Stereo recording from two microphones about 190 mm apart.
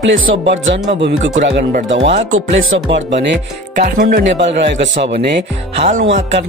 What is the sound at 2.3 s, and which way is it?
Speech, 85° right.